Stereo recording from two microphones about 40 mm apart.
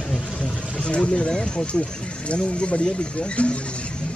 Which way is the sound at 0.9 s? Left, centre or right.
Left.